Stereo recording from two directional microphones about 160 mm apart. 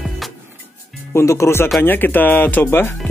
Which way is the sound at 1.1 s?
20° left (ahead or behind).